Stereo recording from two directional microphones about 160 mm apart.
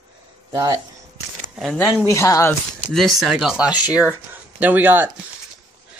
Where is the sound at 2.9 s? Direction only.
Centre (ahead or behind).